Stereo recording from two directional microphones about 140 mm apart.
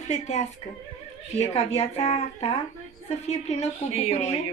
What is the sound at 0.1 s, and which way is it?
Speech, 55° left (ahead or behind).